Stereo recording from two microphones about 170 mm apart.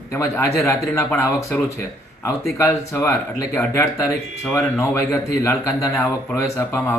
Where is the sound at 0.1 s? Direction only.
15° left (ahead or behind).